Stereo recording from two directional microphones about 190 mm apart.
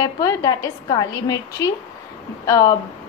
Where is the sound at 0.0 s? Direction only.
15° left (ahead or behind).